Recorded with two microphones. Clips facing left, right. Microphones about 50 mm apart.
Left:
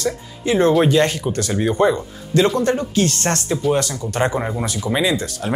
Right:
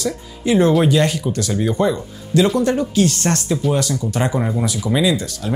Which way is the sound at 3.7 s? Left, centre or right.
Left.